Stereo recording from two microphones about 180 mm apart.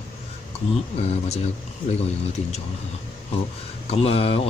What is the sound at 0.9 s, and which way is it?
Speech, 35° left (ahead or behind).